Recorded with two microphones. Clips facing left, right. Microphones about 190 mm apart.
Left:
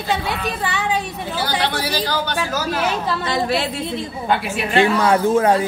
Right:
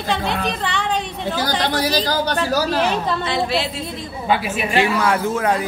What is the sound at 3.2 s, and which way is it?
Speech, 50° left (ahead or behind).